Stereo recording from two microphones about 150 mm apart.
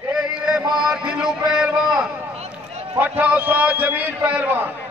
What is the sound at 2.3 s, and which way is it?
Run, 45° right (ahead or behind).